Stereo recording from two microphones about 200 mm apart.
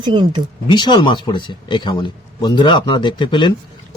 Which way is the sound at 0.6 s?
25° left (ahead or behind).